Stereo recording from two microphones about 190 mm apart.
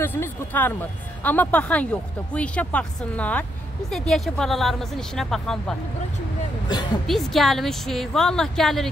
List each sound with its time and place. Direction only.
0.0 s speech: 10° left (ahead or behind)
6.7 s a woman's voice: 20° left (ahead or behind)
7.1 s speech: centre (ahead or behind)